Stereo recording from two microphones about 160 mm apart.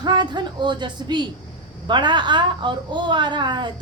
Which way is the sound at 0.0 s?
30° right (ahead or behind).